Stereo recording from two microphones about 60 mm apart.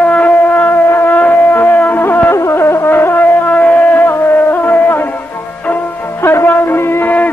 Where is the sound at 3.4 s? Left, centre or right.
Left.